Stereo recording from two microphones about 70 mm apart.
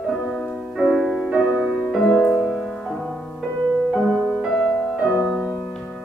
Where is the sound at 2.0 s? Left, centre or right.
Centre.